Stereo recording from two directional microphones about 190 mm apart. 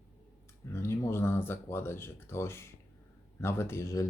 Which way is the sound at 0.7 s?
15° left (ahead or behind).